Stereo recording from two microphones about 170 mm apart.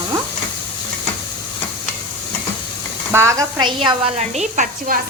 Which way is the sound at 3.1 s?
20° right (ahead or behind).